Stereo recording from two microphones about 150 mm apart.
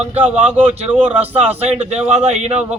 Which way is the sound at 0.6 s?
40° right (ahead or behind).